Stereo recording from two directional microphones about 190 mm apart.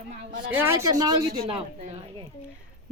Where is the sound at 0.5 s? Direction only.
15° right (ahead or behind).